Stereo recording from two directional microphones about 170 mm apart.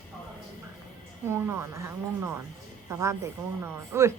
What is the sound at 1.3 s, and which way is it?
Speech, 15° right (ahead or behind).